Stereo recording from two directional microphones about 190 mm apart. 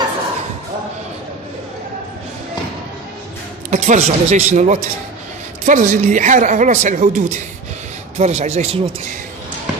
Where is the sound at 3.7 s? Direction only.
40° right (ahead or behind).